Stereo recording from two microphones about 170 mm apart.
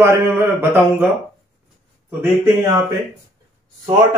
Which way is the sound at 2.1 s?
10° right (ahead or behind).